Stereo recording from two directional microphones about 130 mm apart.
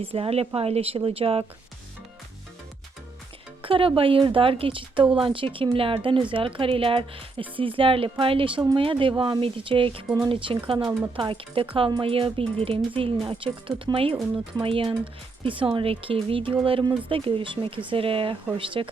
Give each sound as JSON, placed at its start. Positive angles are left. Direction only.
{"t": 0.0, "sound": "speech", "side_deg": -50}
{"t": 3.6, "sound": "speech", "side_deg": -45}